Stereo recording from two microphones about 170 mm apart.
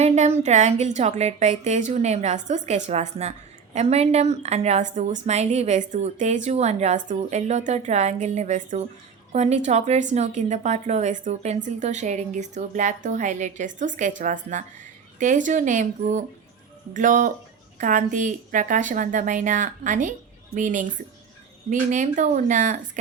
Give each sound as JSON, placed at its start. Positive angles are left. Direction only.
{"t": 0.0, "sound": "a woman's voice", "side_deg": -40}